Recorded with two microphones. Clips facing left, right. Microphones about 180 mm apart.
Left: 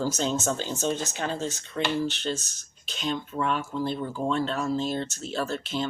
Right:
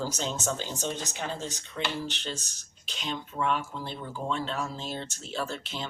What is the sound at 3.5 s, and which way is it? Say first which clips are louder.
Speech: left 4 dB; 15° right (ahead or behind).